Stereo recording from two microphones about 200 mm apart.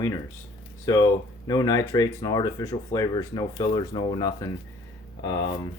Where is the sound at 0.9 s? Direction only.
20° left (ahead or behind).